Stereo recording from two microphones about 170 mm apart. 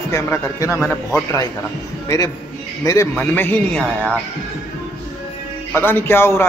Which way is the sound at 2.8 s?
15° left (ahead or behind).